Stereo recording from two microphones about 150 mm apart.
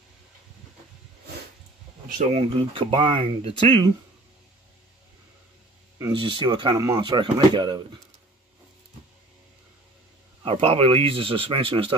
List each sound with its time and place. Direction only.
2.3 s speech: 35° right (ahead or behind)
6.1 s speech: 35° right (ahead or behind)
10.4 s speech: 40° right (ahead or behind)